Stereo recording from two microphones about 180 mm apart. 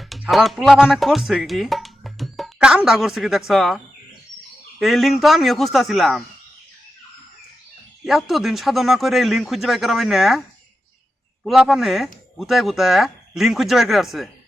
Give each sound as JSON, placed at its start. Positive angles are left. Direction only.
{"t": 0.0, "sound": "speech", "side_deg": 0}
{"t": 4.8, "sound": "speech", "side_deg": 0}
{"t": 8.0, "sound": "speech", "side_deg": 0}
{"t": 11.4, "sound": "speech", "side_deg": 0}